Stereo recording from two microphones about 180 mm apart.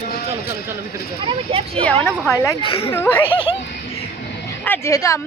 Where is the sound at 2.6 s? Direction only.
30° left (ahead or behind).